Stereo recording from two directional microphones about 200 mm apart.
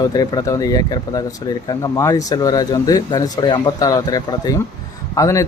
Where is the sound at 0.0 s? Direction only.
20° left (ahead or behind).